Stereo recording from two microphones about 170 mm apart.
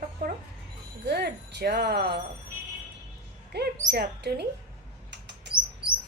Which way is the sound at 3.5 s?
80° right.